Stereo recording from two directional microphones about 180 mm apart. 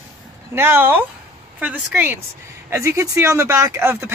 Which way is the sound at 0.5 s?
10° right (ahead or behind).